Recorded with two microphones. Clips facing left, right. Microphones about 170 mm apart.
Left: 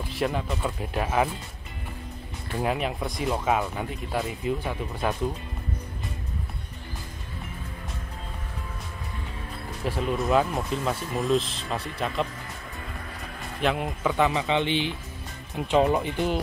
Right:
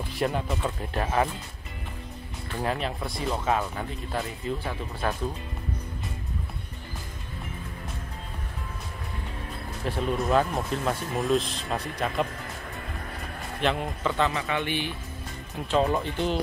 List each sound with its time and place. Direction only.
0.2 s speech: centre (ahead or behind)
2.6 s speech: 10° left (ahead or behind)
9.8 s speech: 5° left (ahead or behind)
13.6 s speech: 5° left (ahead or behind)